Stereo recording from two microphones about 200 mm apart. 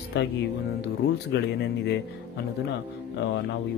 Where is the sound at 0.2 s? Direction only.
60° left (ahead or behind).